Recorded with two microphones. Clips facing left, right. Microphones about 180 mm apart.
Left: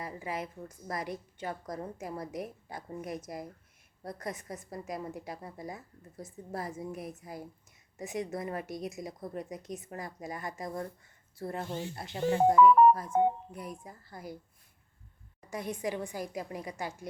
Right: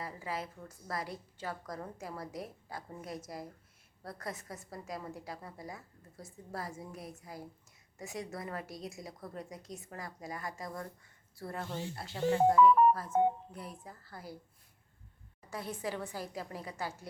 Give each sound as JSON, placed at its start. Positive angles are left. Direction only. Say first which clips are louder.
{"t": 0.0, "sound": "a sound", "louder": "left 2 dB", "side_deg": 20}
{"t": 0.9, "sound": "a woman's voice", "louder": "left 3 dB", "side_deg": 20}
{"t": 15.4, "sound": "a woman's voice", "louder": "left 4 dB", "side_deg": 15}